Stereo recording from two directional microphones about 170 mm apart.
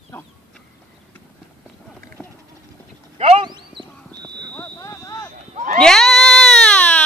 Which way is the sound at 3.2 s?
30° right (ahead or behind).